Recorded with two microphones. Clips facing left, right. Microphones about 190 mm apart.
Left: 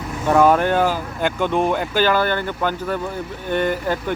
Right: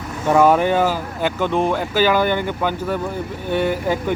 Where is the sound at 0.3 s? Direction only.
5° right (ahead or behind).